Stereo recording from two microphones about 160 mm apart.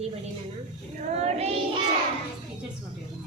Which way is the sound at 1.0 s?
45° right (ahead or behind).